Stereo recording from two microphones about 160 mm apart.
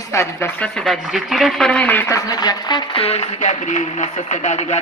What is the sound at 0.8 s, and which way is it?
Speech, centre (ahead or behind).